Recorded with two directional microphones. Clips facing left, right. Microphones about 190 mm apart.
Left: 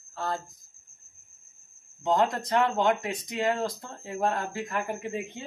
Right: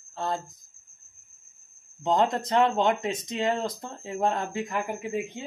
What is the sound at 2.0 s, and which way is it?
Speech, 25° right (ahead or behind).